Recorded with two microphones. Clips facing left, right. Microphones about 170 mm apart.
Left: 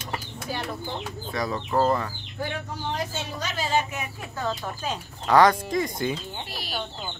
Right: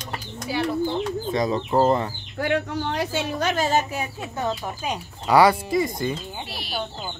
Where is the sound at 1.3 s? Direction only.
20° right (ahead or behind).